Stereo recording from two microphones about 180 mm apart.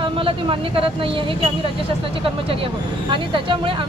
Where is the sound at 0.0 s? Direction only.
30° right (ahead or behind).